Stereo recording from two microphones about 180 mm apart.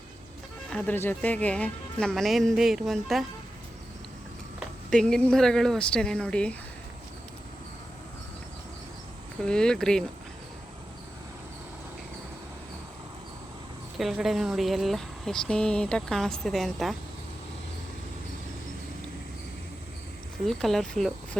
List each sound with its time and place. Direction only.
0.7 s speech: 10° left (ahead or behind)
4.9 s speech: 5° left (ahead or behind)
9.4 s speech: 5° left (ahead or behind)
14.0 s speech: centre (ahead or behind)
20.5 s speech: centre (ahead or behind)